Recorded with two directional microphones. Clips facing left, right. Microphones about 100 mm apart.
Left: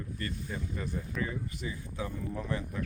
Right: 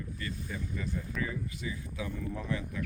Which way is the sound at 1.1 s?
Centre (ahead or behind).